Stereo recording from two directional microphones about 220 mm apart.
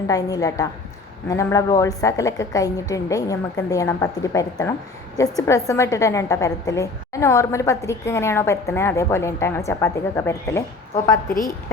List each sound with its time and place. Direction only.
0.1 s a woman's voice: 15° left (ahead or behind)